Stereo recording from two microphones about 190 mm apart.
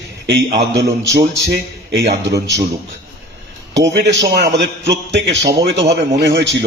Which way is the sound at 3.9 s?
65° right (ahead or behind).